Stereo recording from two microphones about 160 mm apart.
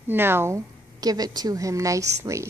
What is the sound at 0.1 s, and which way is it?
A woman's voice, 15° right (ahead or behind).